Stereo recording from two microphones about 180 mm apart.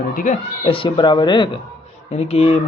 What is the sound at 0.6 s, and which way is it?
Speech, 30° left (ahead or behind).